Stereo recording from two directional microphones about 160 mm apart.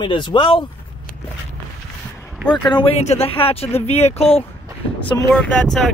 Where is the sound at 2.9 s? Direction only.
40° left (ahead or behind).